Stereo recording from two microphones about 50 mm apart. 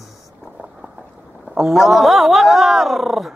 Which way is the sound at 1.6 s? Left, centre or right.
Centre.